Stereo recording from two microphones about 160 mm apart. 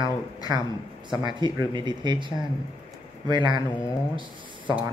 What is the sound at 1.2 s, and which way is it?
Speech, 25° right (ahead or behind).